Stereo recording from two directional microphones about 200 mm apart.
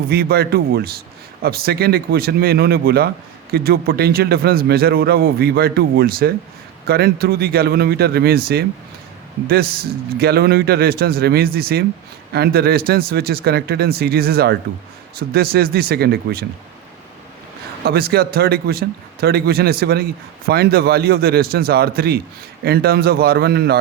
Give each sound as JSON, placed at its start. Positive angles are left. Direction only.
{"t": 0.1, "sound": "a man's voice", "side_deg": -50}
{"t": 17.8, "sound": "a man's voice", "side_deg": -50}